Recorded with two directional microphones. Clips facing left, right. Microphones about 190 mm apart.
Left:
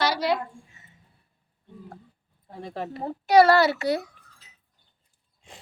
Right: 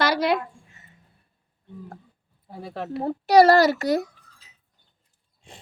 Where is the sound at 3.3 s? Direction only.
35° right (ahead or behind).